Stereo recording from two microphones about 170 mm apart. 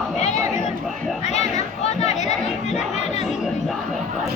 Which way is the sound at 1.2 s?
40° left (ahead or behind).